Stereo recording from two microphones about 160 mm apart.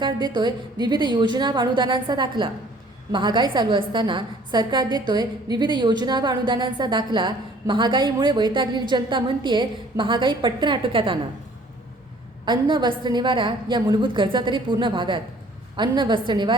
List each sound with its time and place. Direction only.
0.0 s a woman's voice: 30° right (ahead or behind)
12.5 s a woman's voice: 30° right (ahead or behind)